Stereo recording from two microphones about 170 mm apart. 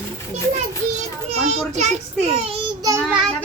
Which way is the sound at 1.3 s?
40° right (ahead or behind).